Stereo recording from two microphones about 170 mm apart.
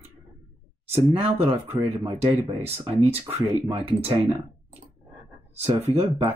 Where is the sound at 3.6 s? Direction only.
35° right (ahead or behind).